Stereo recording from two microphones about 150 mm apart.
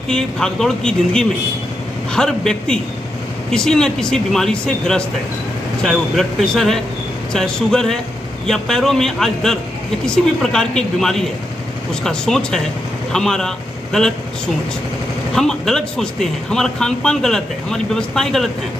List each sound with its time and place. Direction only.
0.1 s speech: 5° left (ahead or behind)
15.3 s speech: 5° left (ahead or behind)